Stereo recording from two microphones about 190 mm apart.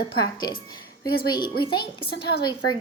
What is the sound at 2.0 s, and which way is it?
Speech, 60° left (ahead or behind).